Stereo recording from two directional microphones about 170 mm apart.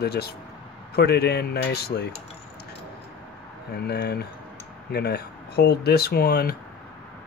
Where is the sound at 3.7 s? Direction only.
70° left (ahead or behind).